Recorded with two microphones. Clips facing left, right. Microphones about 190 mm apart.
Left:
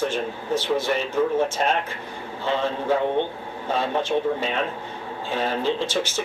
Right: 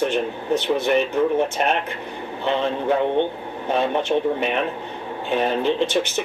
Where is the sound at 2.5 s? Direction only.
60° right (ahead or behind).